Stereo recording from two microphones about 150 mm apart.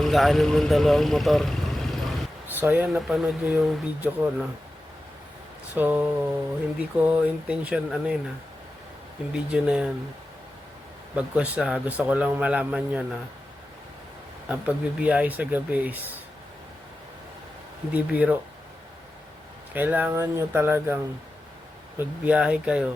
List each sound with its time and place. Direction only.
0.0 s speech: centre (ahead or behind)
2.5 s speech: 15° right (ahead or behind)
5.7 s a man's voice: 10° right (ahead or behind)
9.3 s a man's voice: 5° right (ahead or behind)
11.1 s a man's voice: 10° right (ahead or behind)
14.4 s a man's voice: 10° right (ahead or behind)
17.9 s a man's voice: 10° right (ahead or behind)
19.7 s a man's voice: 10° right (ahead or behind)